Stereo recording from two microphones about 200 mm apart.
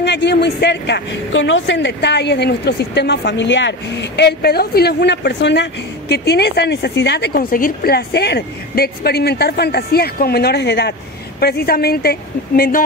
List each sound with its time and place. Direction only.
0.0 s a woman's voice: 60° left (ahead or behind)